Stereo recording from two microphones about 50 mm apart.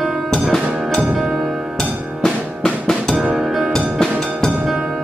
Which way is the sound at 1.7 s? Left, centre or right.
Centre.